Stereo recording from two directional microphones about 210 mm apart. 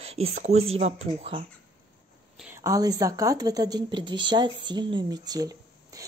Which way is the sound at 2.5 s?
15° right (ahead or behind).